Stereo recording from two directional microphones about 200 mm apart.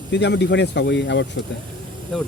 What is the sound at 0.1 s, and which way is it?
Speech, 60° left (ahead or behind).